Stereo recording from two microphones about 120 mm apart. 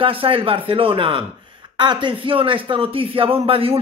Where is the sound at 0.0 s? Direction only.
50° right (ahead or behind).